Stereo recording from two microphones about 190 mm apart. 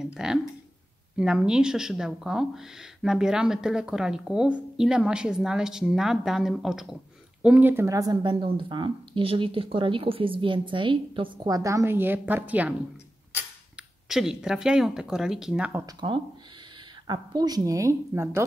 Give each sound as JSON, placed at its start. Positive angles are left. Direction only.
{"t": 0.0, "sound": "speech", "side_deg": -5}
{"t": 14.0, "sound": "speech", "side_deg": -5}
{"t": 15.8, "sound": "a woman's voice", "side_deg": -25}